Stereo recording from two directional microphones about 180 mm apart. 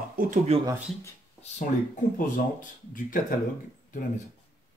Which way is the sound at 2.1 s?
50° left (ahead or behind).